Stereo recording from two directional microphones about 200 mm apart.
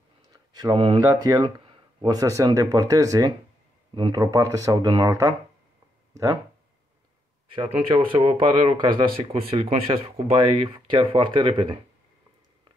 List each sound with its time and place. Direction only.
0.2 s speech: 15° right (ahead or behind)
7.5 s speech: 25° right (ahead or behind)